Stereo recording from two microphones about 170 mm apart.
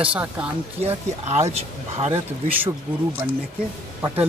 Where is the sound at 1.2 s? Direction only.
40° right (ahead or behind).